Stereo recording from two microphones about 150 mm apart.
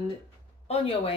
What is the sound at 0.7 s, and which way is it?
Speech, 40° left (ahead or behind).